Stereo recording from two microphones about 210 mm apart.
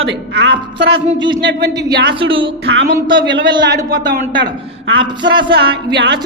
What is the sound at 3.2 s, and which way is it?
A man's voice, 60° right (ahead or behind).